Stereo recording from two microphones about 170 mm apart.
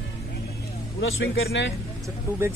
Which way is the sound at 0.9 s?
90° left.